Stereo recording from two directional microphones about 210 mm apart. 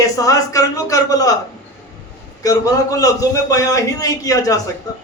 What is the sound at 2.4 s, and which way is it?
A man's voice, 15° left (ahead or behind).